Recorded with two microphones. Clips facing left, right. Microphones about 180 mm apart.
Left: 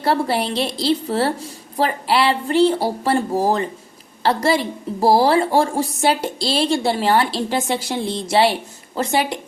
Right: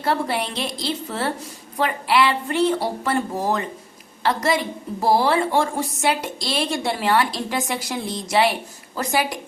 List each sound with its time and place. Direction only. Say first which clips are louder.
0.0 s a woman's voice: left 4 dB; 35° left (ahead or behind)